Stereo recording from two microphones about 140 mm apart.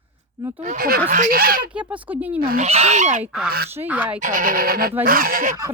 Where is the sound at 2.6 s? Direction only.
50° right (ahead or behind).